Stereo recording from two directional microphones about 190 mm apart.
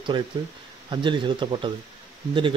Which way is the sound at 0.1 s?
25° right (ahead or behind).